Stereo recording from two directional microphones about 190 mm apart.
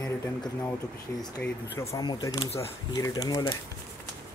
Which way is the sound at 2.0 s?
20° left (ahead or behind).